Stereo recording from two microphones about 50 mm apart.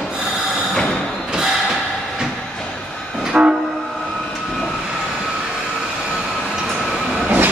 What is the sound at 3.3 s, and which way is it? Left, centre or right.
Train, right.